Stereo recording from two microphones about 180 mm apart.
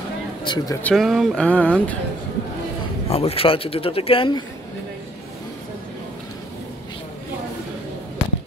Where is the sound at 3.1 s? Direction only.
35° left (ahead or behind).